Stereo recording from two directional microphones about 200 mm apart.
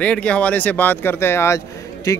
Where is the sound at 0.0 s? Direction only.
5° left (ahead or behind).